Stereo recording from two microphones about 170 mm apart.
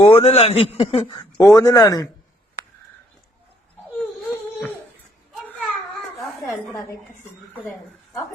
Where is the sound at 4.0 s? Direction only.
10° left (ahead or behind).